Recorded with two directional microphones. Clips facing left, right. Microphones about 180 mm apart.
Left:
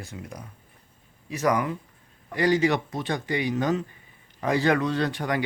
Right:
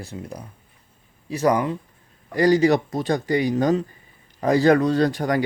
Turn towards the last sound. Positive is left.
turn(degrees=-40)  # may be behind; listen again after turning